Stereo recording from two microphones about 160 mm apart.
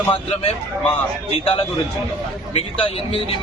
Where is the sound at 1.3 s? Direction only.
35° left (ahead or behind).